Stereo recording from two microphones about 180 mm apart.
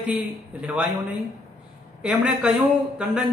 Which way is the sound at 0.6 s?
5° right (ahead or behind).